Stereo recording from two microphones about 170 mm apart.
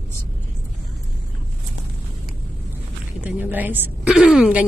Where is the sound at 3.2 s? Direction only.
10° right (ahead or behind).